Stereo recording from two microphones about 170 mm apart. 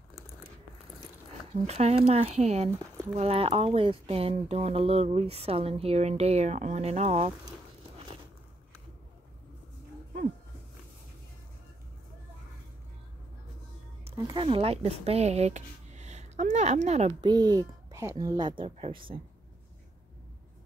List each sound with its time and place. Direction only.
1.5 s speech: 40° right (ahead or behind)
14.1 s speech: 25° right (ahead or behind); by 17.1 s 40° right (ahead or behind)
17.2 s speech: 25° right (ahead or behind)